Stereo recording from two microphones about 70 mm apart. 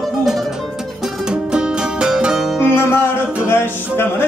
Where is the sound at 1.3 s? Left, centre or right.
Centre.